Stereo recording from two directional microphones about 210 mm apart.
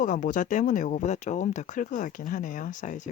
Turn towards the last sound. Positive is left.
turn(degrees=35)  # may be behind; listen again after turning